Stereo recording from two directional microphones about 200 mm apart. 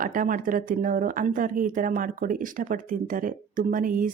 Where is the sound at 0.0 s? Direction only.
40° right (ahead or behind).